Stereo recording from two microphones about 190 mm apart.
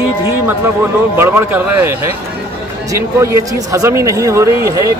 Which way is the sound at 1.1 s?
10° right (ahead or behind).